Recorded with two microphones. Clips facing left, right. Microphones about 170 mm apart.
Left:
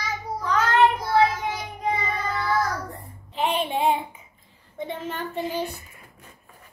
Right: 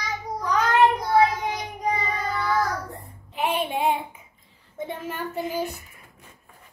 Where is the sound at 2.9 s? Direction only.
Centre (ahead or behind).